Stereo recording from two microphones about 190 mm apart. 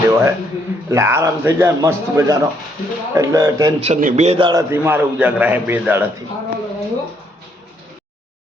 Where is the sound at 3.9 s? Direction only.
40° right (ahead or behind); by 6.0 s 10° right (ahead or behind).